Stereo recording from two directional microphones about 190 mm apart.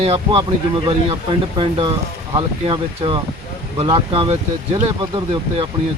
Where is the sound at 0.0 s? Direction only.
30° right (ahead or behind).